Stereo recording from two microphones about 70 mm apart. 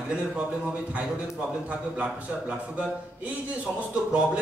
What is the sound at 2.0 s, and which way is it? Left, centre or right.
A man's voice, centre.